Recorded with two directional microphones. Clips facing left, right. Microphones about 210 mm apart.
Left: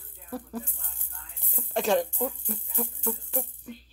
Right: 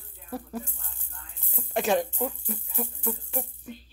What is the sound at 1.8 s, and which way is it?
Speech, 5° right (ahead or behind).